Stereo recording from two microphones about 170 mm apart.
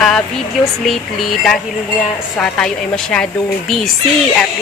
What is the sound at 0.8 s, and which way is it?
Speech, centre (ahead or behind).